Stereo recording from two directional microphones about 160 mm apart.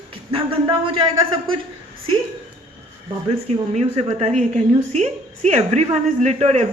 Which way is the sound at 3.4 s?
40° right (ahead or behind).